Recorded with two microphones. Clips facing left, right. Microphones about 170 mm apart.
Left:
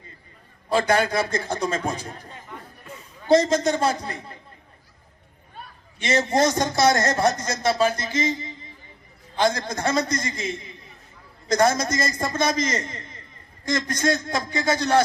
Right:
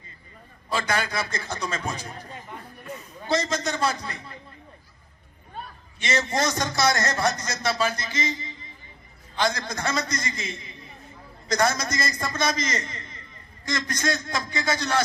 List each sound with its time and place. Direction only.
0.7 s a man's voice: 55° left (ahead or behind)
3.2 s a man's voice: 50° left (ahead or behind)
6.0 s a man's voice: 55° left (ahead or behind)